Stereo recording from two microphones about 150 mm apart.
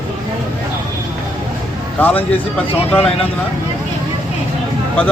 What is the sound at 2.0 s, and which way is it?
Speech, 10° left (ahead or behind).